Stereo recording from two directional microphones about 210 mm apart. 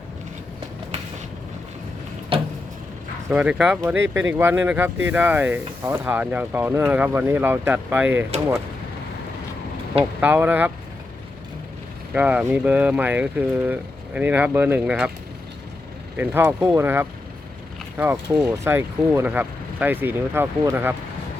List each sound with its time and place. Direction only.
2.3 s vehicle: 25° right (ahead or behind)
3.2 s speech: 5° right (ahead or behind)
10.0 s speech: 5° right (ahead or behind)
12.1 s speech: 5° right (ahead or behind)
16.1 s speech: 10° right (ahead or behind)